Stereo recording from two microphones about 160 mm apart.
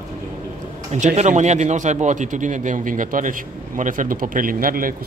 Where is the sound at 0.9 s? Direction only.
45° right (ahead or behind).